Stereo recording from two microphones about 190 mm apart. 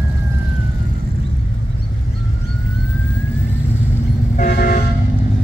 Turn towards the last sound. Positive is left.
turn(degrees=50)  # may be behind; listen again after turning